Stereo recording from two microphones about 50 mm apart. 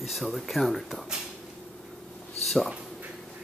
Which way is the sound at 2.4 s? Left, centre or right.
Centre.